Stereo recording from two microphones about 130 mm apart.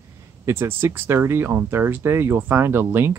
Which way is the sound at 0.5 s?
20° right (ahead or behind).